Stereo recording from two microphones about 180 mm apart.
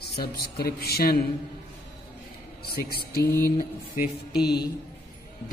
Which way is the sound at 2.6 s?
60° left (ahead or behind).